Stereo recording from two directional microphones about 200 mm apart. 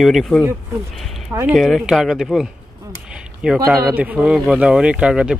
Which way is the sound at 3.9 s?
5° right (ahead or behind).